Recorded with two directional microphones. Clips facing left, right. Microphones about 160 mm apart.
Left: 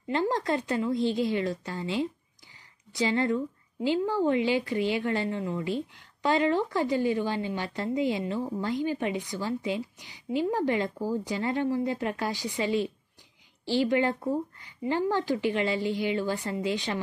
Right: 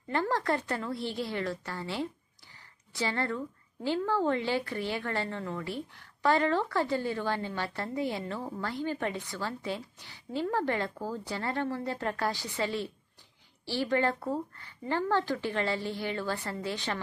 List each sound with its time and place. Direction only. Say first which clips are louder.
0.0 s a woman's voice: left 3 dB; 15° left (ahead or behind)